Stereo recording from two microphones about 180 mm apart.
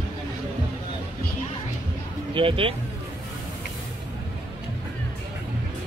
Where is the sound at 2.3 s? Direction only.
30° right (ahead or behind).